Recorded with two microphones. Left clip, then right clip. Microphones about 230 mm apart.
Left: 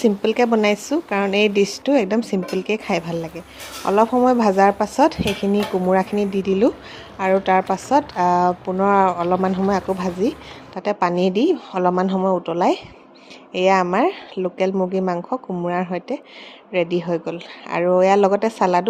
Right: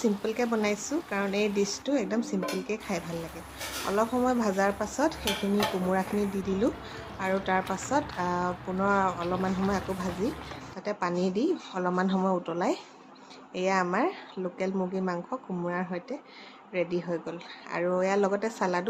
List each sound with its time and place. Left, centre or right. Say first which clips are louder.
0.0 s a woman's voice: left 11 dB; left
5.2 s dishes: left 7 dB; centre
5.9 s a woman's voice: left 10 dB; left